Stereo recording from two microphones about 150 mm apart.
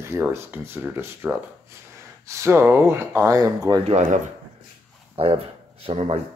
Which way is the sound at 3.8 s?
50° right (ahead or behind).